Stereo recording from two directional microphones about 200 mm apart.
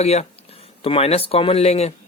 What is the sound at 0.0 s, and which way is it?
Speech, 30° left (ahead or behind).